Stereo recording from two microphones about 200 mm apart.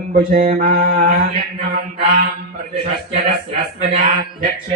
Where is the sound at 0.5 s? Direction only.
45° right (ahead or behind).